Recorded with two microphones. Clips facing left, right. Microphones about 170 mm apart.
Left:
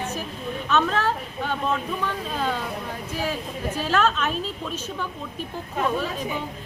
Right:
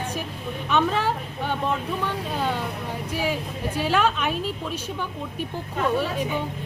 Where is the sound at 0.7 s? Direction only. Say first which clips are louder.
Even; 15° right (ahead or behind).